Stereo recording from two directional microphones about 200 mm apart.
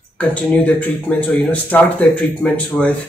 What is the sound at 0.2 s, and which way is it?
A man's voice, 5° left (ahead or behind).